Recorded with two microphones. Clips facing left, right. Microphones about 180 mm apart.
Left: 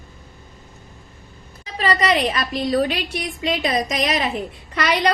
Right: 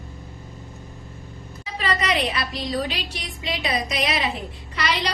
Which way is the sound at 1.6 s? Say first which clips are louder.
Left 5 dB; 40° left (ahead or behind).